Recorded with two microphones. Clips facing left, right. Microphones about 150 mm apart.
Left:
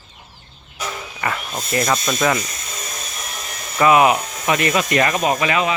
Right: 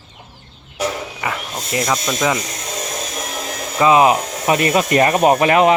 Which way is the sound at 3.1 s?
90° right.